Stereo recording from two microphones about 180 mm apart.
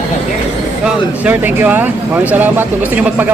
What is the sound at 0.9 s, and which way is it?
Speech, 10° right (ahead or behind).